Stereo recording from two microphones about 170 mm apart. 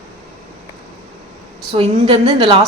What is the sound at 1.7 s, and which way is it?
Speech, 35° right (ahead or behind).